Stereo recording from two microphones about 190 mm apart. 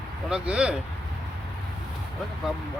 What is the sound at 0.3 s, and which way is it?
Speech, 5° right (ahead or behind).